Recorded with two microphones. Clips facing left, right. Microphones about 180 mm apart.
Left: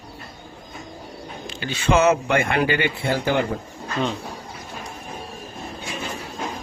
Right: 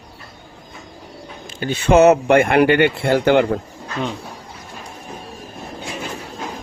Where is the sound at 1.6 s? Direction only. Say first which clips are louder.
Right 6 dB; 55° right (ahead or behind); by 3.4 s 70° right (ahead or behind).